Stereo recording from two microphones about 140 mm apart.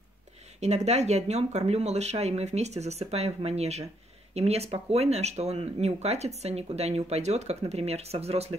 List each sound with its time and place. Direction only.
0.6 s speech: 55° right (ahead or behind)